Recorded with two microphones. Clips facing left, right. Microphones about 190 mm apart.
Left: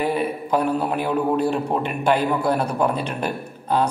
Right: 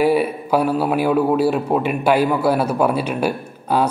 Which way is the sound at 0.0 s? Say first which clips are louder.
Right 6 dB; 10° right (ahead or behind).